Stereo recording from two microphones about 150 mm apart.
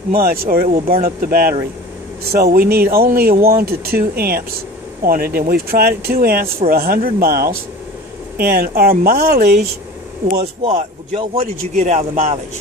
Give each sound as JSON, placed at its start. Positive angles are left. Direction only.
{"t": 0.1, "sound": "speech", "side_deg": -80}
{"t": 2.3, "sound": "speech", "side_deg": -85}
{"t": 10.6, "sound": "speech", "side_deg": -40}